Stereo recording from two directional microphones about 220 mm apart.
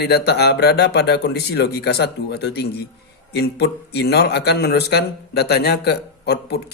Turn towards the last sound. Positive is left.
turn(degrees=45)  # may be behind; listen again after turning